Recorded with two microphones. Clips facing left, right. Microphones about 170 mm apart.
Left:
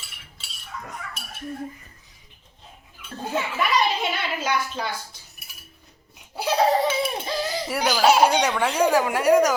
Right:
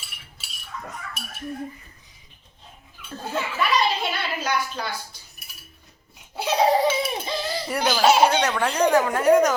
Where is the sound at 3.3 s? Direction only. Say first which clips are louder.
Even; 10° left (ahead or behind).